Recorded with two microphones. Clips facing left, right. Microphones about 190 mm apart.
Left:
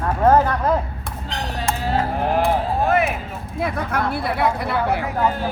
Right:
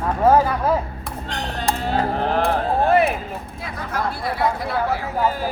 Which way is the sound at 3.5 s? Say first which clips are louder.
Left 7 dB; 60° left (ahead or behind).